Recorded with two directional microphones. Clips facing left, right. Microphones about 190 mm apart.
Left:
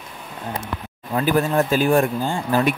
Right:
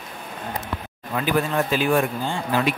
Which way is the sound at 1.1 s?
40° left (ahead or behind).